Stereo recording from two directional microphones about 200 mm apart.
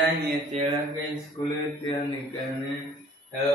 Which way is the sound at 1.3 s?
20° left (ahead or behind).